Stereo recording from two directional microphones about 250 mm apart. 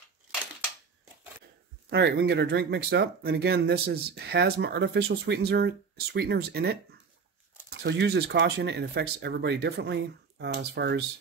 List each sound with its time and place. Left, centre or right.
1.9 s speech: right